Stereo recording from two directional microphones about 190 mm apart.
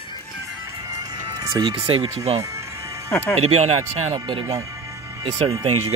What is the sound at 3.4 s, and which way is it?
Speech, 30° right (ahead or behind).